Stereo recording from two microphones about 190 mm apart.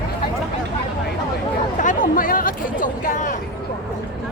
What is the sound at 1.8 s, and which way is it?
Speech, 45° left (ahead or behind).